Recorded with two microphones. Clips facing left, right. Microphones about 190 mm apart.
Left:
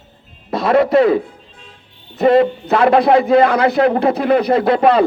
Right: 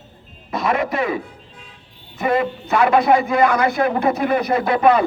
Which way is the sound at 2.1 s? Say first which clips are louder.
Left 8 dB; 60° left (ahead or behind).